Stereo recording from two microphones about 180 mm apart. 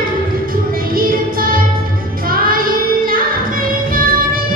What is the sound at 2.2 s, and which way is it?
Child singing, 55° right (ahead or behind).